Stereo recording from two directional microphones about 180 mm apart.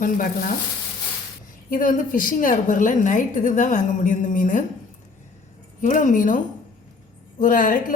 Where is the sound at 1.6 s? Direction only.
50° left (ahead or behind).